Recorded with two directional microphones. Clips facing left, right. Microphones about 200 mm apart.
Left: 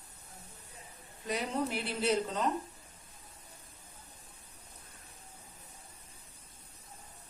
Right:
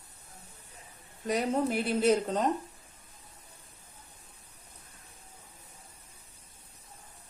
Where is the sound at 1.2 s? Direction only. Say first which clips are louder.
Right 6 dB; 45° right (ahead or behind).